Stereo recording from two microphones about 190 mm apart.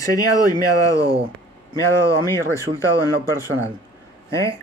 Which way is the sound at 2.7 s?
40° right (ahead or behind).